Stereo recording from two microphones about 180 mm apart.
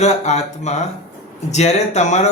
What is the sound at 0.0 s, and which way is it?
Speech, 40° left (ahead or behind).